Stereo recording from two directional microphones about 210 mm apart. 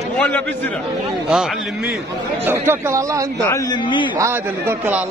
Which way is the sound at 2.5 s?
10° right (ahead or behind).